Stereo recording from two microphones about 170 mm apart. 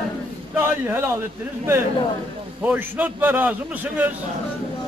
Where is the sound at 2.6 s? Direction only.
10° right (ahead or behind).